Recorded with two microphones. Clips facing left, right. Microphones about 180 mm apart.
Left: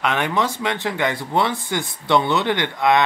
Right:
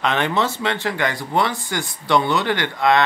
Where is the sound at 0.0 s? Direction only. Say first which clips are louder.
Right 1 dB; 10° left (ahead or behind).